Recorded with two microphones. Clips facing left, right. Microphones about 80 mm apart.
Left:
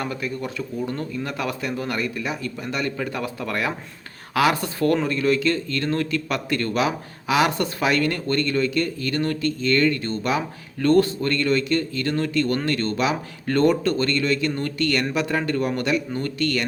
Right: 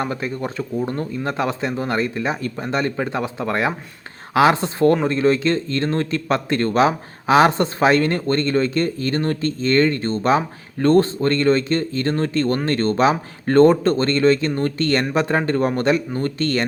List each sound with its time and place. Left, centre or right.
0.0 s speech: right